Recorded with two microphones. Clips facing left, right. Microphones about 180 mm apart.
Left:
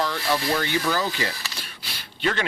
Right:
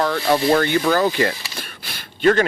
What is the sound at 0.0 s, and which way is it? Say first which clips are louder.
Speech: right 7 dB; 55° right (ahead or behind).